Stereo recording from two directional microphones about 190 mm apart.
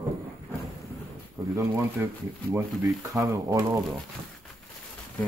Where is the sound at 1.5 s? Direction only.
15° right (ahead or behind).